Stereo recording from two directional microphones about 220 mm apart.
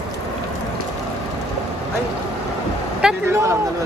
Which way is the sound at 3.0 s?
5° right (ahead or behind).